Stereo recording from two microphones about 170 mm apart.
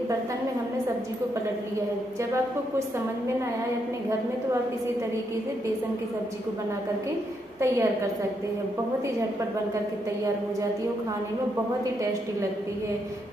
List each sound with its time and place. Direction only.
7.6 s a woman's voice: 15° right (ahead or behind)
11.8 s a woman's voice: 20° right (ahead or behind)